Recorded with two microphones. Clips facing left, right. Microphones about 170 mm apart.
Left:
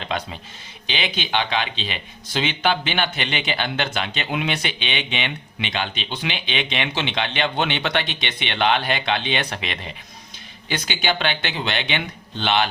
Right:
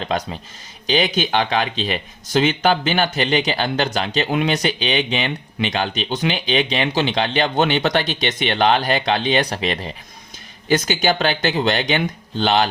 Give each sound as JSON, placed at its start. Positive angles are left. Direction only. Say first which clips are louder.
{"t": 0.1, "sound": "speech", "louder": "right 3 dB", "side_deg": -40}